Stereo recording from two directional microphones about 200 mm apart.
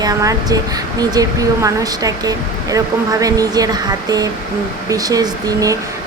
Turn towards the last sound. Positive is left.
turn(degrees=-15)  # may be behind; listen again after turning